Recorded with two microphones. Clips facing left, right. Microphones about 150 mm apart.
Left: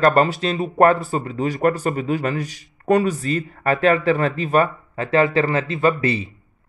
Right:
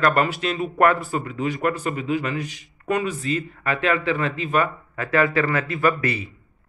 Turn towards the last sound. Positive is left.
turn(degrees=25)  # may be behind; listen again after turning